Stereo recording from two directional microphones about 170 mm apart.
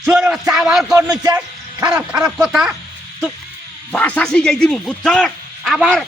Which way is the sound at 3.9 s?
10° left (ahead or behind).